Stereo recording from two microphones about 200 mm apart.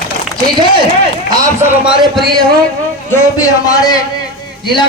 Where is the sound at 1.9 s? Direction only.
Centre (ahead or behind).